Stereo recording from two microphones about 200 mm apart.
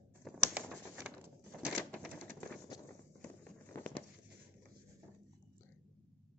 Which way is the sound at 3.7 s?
15° left (ahead or behind).